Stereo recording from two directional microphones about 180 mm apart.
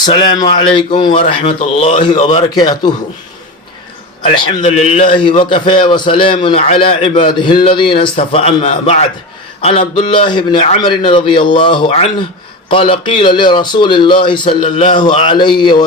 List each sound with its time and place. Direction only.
0.0 s a man's voice: 25° left (ahead or behind)
2.6 s a man's voice: 25° left (ahead or behind)
4.3 s a man's voice: 25° left (ahead or behind)